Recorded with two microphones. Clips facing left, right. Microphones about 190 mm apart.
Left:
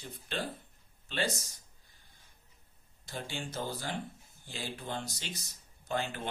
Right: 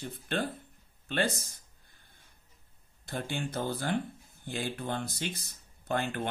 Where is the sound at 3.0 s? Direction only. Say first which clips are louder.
Right 5 dB; 55° right (ahead or behind).